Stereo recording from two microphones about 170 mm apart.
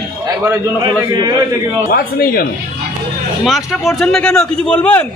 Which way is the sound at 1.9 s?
65° left (ahead or behind).